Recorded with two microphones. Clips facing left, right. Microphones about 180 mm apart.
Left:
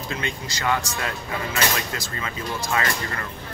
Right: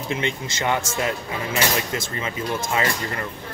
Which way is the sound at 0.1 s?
25° right (ahead or behind).